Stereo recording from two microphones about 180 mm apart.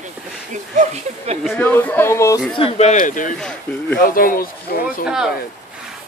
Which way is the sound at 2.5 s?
35° left (ahead or behind).